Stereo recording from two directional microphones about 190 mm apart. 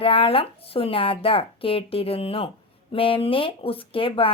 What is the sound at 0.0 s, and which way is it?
Speech, 30° left (ahead or behind).